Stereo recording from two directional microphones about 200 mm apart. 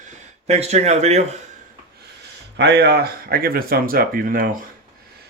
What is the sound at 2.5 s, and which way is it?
Speech, 55° right (ahead or behind).